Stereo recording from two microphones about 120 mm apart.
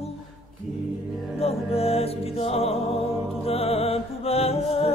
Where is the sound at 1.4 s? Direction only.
55° left (ahead or behind).